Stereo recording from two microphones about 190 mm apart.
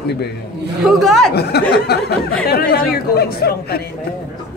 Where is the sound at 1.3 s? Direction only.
60° left (ahead or behind).